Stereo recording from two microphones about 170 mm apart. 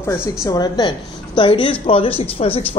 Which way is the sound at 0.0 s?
15° left (ahead or behind).